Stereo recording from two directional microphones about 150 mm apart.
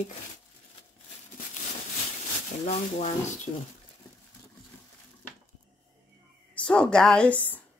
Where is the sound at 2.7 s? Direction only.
50° left (ahead or behind).